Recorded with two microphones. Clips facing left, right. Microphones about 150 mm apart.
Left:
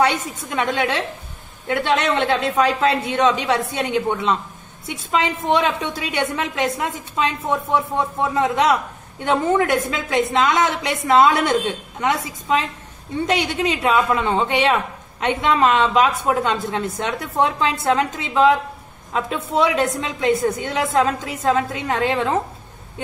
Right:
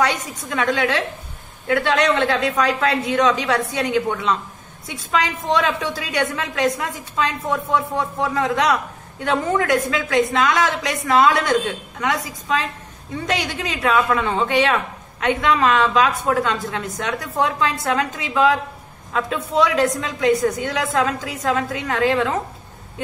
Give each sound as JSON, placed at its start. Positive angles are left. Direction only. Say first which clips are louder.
{"t": 0.0, "sound": "speech", "louder": "left 2 dB", "side_deg": 25}